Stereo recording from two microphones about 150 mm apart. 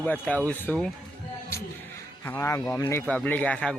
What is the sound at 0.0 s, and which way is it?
Speech, 10° left (ahead or behind).